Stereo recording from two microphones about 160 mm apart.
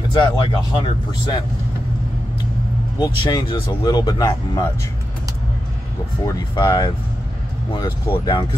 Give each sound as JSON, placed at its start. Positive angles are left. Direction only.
{"t": 0.1, "sound": "speech", "side_deg": 30}
{"t": 3.0, "sound": "speech", "side_deg": 25}
{"t": 6.2, "sound": "speech", "side_deg": 25}